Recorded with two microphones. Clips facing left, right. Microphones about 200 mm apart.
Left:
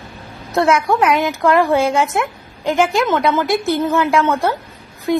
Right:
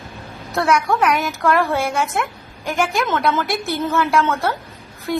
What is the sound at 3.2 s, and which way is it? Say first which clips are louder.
A woman's voice: left 4 dB; 15° left (ahead or behind).